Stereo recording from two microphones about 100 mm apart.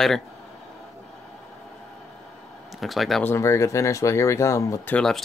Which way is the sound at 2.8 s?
Centre (ahead or behind).